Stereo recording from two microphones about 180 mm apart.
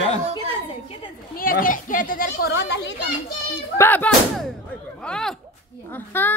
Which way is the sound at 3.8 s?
10° left (ahead or behind).